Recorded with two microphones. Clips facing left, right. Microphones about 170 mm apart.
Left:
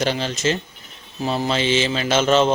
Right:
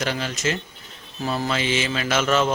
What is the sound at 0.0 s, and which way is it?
Speech, 30° left (ahead or behind).